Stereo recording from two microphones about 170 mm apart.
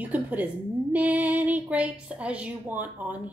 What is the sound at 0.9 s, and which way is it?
A woman's voice, 10° right (ahead or behind).